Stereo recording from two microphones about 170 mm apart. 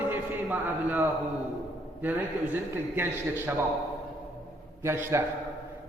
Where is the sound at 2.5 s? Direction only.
10° right (ahead or behind).